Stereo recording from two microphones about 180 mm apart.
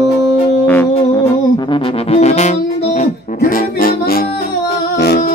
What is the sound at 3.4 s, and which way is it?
Music, 50° left (ahead or behind).